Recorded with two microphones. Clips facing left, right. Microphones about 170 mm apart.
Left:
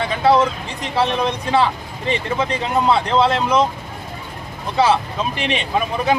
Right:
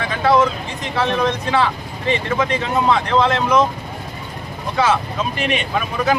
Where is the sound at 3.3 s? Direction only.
30° left (ahead or behind).